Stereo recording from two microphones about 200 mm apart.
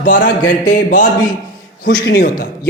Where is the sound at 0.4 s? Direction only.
40° left (ahead or behind).